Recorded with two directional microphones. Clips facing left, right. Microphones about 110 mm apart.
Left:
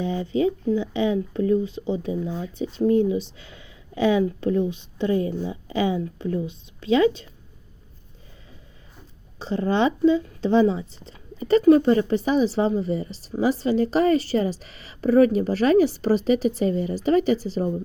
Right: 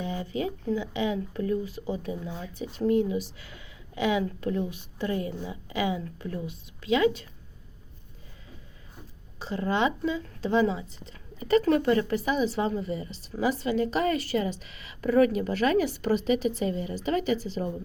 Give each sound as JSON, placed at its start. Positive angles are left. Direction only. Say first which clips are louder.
{"t": 0.0, "sound": "speech", "louder": "left 8 dB", "side_deg": 30}
{"t": 9.4, "sound": "speech", "louder": "left 5 dB", "side_deg": 30}